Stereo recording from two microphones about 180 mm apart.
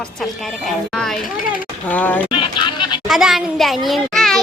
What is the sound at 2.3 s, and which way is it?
Speech, 25° left (ahead or behind).